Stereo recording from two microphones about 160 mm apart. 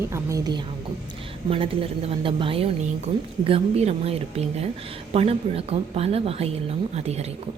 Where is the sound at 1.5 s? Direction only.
35° right (ahead or behind).